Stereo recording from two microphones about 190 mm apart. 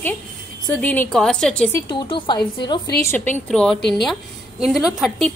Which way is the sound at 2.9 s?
10° left (ahead or behind).